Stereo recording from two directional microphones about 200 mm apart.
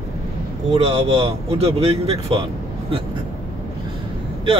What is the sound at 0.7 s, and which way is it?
Speech, 30° right (ahead or behind).